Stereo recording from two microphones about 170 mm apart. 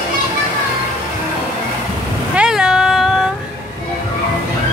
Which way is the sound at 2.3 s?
5° right (ahead or behind).